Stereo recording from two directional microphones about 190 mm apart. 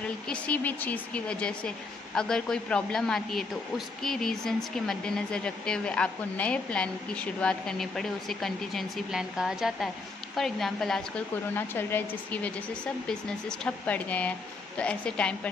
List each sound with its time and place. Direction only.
0.0 s a woman's voice: 5° left (ahead or behind)